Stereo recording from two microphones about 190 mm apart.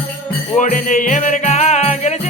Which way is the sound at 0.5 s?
45° left (ahead or behind).